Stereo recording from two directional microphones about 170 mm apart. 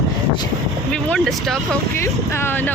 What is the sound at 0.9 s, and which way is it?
Vehicle, 5° left (ahead or behind).